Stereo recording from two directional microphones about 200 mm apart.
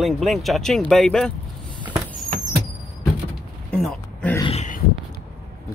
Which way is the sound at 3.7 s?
5° left (ahead or behind).